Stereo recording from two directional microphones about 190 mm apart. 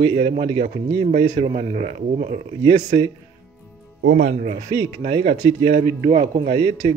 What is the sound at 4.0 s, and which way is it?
Speech, 55° right (ahead or behind).